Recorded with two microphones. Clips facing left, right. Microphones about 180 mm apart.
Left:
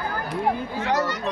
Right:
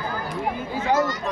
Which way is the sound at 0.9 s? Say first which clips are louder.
Right 3 dB; 65° left (ahead or behind).